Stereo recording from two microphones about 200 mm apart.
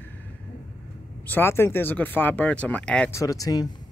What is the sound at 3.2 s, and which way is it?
Speech, 15° left (ahead or behind).